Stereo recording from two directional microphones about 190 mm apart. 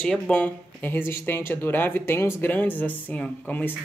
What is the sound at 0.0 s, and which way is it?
Speech, 5° left (ahead or behind).